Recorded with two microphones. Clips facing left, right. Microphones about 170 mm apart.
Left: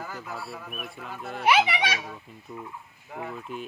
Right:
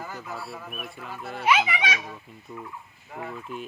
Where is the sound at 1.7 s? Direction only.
35° left (ahead or behind).